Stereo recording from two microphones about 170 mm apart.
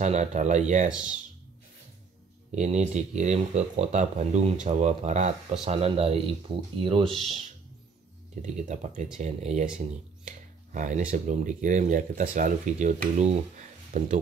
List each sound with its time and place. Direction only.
0.0 s speech: 40° right (ahead or behind)
2.5 s speech: 40° right (ahead or behind)
8.4 s speech: 45° right (ahead or behind)